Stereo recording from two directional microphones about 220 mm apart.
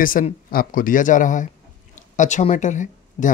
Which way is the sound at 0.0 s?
40° left (ahead or behind).